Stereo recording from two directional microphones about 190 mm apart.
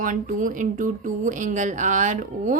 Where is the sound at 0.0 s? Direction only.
45° right (ahead or behind).